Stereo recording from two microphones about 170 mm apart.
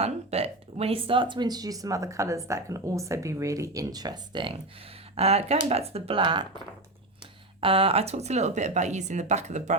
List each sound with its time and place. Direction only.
0.0 s speech: 35° right (ahead or behind)
7.6 s speech: 35° right (ahead or behind)